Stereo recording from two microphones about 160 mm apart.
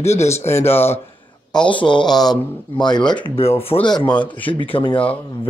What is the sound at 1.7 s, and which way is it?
Speech, 30° left (ahead or behind).